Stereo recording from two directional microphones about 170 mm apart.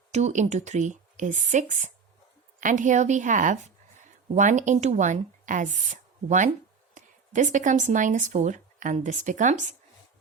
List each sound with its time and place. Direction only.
0.1 s a woman's voice: 40° right (ahead or behind)